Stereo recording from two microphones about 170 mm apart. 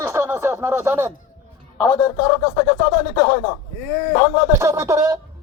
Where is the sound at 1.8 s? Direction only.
20° left (ahead or behind).